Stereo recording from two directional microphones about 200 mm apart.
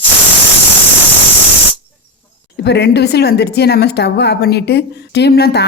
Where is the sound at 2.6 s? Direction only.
55° left (ahead or behind).